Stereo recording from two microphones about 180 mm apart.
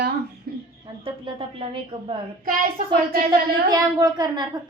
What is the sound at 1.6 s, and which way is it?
Speech, 35° right (ahead or behind).